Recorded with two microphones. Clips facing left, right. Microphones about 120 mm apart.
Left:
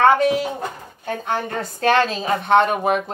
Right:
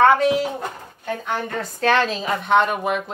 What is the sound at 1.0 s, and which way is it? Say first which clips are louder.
Speech: left 2 dB; 45° left (ahead or behind).